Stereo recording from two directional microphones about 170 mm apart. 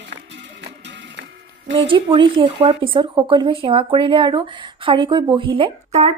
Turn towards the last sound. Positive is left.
turn(degrees=-35)  # may be behind; listen again after turning